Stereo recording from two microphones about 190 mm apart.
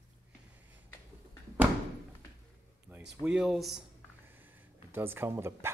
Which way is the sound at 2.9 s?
5° right (ahead or behind).